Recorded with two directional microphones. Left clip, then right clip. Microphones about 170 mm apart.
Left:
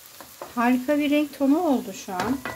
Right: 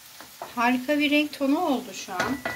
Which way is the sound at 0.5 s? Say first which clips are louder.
Left 1 dB; 45° left (ahead or behind).